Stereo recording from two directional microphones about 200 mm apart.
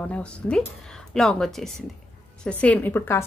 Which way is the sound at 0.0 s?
5° left (ahead or behind).